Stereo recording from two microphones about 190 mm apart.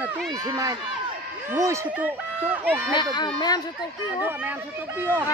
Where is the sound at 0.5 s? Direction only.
20° right (ahead or behind).